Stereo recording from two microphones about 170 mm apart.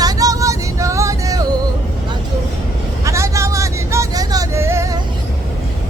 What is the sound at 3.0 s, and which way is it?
Music, 20° right (ahead or behind).